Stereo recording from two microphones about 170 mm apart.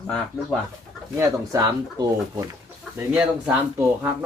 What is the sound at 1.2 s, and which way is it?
Speech, 20° right (ahead or behind).